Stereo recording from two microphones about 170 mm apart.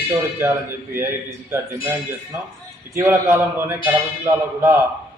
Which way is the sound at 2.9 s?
15° right (ahead or behind).